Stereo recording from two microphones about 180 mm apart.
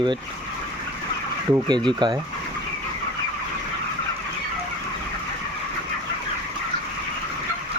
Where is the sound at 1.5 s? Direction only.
25° right (ahead or behind).